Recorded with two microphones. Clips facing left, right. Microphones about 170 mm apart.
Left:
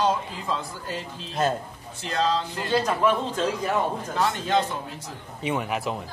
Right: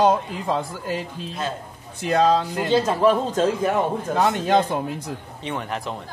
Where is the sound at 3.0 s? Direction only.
40° right (ahead or behind).